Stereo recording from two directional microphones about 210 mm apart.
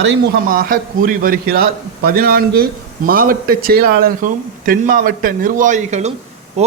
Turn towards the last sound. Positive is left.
turn(degrees=-30)  # may be behind; listen again after turning